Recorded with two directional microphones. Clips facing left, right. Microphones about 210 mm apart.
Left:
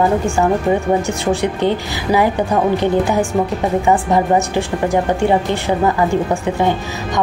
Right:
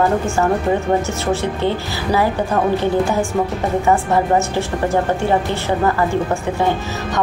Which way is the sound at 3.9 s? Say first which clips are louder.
Left 1 dB; 15° left (ahead or behind).